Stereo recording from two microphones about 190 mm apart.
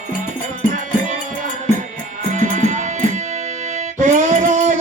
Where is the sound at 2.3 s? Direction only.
40° right (ahead or behind).